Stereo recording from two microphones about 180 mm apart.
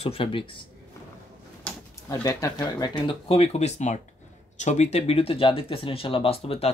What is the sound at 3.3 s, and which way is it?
Speech, 35° left (ahead or behind).